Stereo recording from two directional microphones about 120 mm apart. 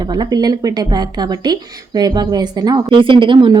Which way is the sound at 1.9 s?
35° right (ahead or behind).